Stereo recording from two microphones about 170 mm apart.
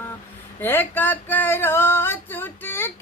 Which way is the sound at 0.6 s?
10° left (ahead or behind).